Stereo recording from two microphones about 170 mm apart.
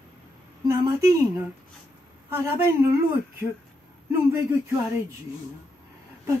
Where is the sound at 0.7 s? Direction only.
20° right (ahead or behind).